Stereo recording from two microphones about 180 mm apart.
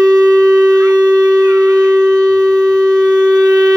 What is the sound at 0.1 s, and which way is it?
Shofar, 20° right (ahead or behind).